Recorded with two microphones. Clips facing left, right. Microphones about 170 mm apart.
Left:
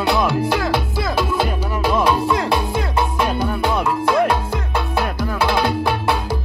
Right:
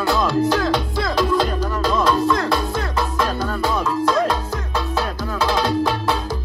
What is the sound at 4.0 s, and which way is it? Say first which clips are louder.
Music: left 1 dB; 60° left (ahead or behind).